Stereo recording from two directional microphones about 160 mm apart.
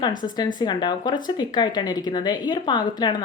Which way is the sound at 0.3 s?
25° left (ahead or behind).